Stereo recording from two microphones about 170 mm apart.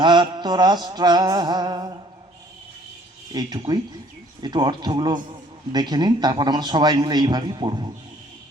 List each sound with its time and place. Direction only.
0.0 s speech: 25° right (ahead or behind)
3.3 s speech: 25° right (ahead or behind)